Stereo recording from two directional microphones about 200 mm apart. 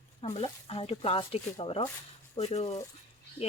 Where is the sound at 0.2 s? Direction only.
25° left (ahead or behind).